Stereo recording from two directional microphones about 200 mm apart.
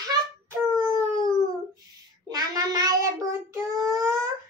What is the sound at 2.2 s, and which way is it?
A child's voice, 20° right (ahead or behind).